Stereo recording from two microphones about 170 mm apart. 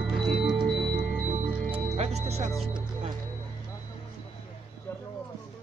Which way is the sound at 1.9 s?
40° right (ahead or behind).